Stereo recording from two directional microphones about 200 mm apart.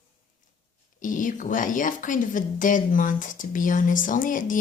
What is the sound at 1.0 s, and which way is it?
Speech, 40° left (ahead or behind).